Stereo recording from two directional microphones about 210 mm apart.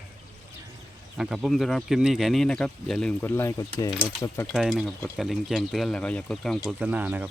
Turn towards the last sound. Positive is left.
turn(degrees=-10)  # may be behind; listen again after turning